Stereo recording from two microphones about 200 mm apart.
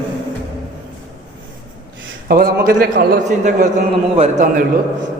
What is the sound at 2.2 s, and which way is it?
A man's voice, 50° right (ahead or behind).